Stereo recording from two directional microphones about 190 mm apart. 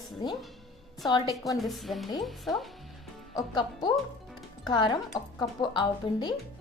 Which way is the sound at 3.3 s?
20° left (ahead or behind).